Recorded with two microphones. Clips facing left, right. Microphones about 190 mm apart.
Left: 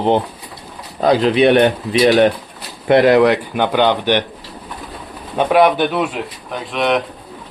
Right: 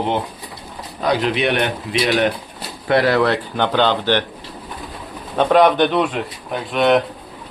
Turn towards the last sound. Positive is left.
turn(degrees=0)  # may be behind; listen again after turning